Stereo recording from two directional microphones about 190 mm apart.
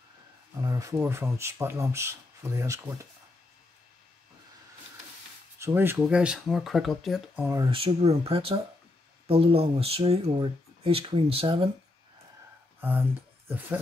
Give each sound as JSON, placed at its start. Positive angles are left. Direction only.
{"t": 0.6, "sound": "speech", "side_deg": -15}
{"t": 5.6, "sound": "speech", "side_deg": -10}
{"t": 7.3, "sound": "speech", "side_deg": -10}
{"t": 7.7, "sound": "speech", "side_deg": -30}
{"t": 12.8, "sound": "speech", "side_deg": -10}